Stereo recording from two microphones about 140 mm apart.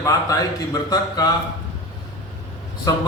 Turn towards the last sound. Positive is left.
turn(degrees=25)  # may be behind; listen again after turning